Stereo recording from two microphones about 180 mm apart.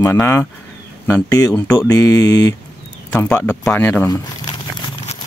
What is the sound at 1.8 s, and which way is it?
Mantra, 20° left (ahead or behind).